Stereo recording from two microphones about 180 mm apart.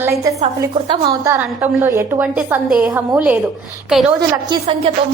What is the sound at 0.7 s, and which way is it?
Speech, 30° right (ahead or behind).